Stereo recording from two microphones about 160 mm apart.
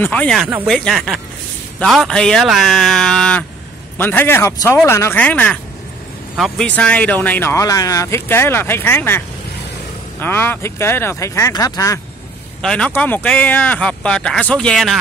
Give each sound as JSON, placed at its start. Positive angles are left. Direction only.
{"t": 0.0, "sound": "speech", "side_deg": 10}
{"t": 10.2, "sound": "speech", "side_deg": 15}
{"t": 12.6, "sound": "speech", "side_deg": 5}